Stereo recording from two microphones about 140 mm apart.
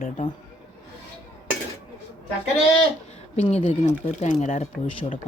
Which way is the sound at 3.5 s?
50° left (ahead or behind).